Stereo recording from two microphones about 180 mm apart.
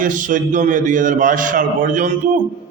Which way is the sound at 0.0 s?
45° right (ahead or behind).